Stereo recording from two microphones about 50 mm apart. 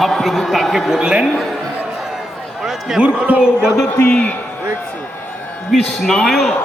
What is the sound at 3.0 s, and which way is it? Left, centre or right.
Speech, right.